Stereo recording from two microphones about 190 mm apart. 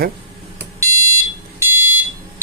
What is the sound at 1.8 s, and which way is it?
Smoke detector, 10° right (ahead or behind).